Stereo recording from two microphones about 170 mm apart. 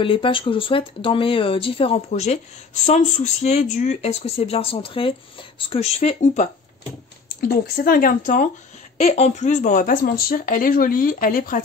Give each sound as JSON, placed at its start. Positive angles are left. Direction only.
{"t": 0.0, "sound": "speech", "side_deg": 30}
{"t": 7.2, "sound": "speech", "side_deg": 55}
{"t": 9.0, "sound": "speech", "side_deg": 40}